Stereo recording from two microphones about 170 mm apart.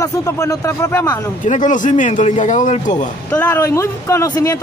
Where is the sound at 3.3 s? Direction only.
10° left (ahead or behind).